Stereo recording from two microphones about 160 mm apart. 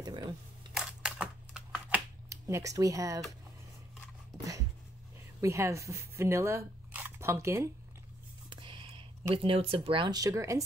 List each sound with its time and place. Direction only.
0.0 s camera: 25° right (ahead or behind)
0.7 s computer keyboard: 5° right (ahead or behind)
2.2 s speech: 20° right (ahead or behind)
5.4 s speech: 20° right (ahead or behind)
8.5 s a sound: 30° right (ahead or behind)
9.3 s speech: 35° right (ahead or behind); by 10.6 s 20° right (ahead or behind)